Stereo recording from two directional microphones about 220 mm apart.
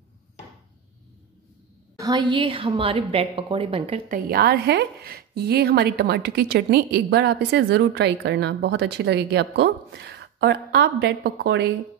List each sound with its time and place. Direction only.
2.0 s a woman's voice: 20° right (ahead or behind)
4.1 s a woman's voice: 45° right (ahead or behind)